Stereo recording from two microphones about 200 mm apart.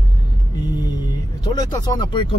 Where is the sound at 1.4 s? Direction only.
20° left (ahead or behind).